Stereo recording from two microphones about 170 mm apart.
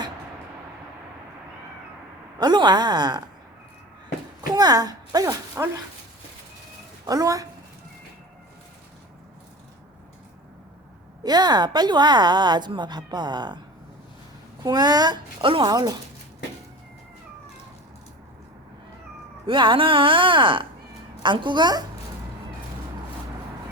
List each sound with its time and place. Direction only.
2.4 s a woman's voice: 25° right (ahead or behind)
4.4 s a woman's voice: 25° right (ahead or behind)
7.0 s a woman's voice: 20° right (ahead or behind)
11.2 s a woman's voice: 25° right (ahead or behind)
14.6 s a woman's voice: 25° right (ahead or behind)
19.5 s a woman's voice: 30° right (ahead or behind)